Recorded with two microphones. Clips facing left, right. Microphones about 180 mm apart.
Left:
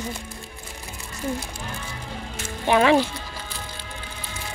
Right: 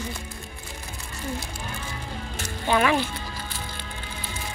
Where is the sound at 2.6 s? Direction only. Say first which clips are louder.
Left 4 dB; 25° left (ahead or behind).